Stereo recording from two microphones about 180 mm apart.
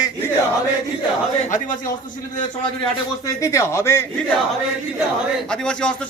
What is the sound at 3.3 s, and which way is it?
Speech, 15° left (ahead or behind).